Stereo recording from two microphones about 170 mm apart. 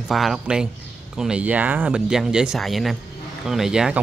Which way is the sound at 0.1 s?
Centre (ahead or behind).